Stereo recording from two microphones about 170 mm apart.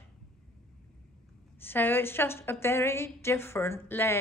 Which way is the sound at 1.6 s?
10° left (ahead or behind).